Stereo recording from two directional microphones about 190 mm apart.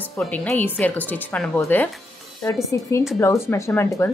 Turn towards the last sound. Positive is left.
turn(degrees=15)  # may be behind; listen again after turning